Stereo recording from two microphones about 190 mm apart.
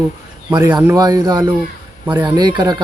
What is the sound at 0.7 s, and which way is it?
Speech, 15° right (ahead or behind).